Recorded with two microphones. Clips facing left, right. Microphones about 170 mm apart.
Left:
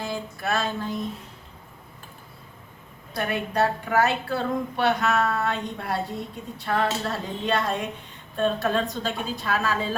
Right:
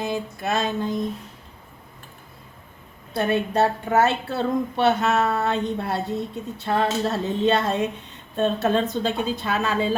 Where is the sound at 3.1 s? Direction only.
25° right (ahead or behind).